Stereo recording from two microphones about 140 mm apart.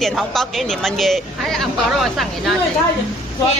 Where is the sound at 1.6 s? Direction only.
Centre (ahead or behind).